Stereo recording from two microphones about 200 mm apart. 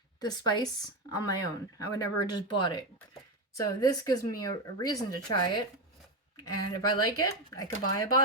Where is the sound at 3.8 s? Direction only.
20° left (ahead or behind).